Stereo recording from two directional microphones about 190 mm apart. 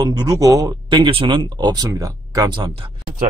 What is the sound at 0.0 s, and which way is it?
Speech, 20° right (ahead or behind).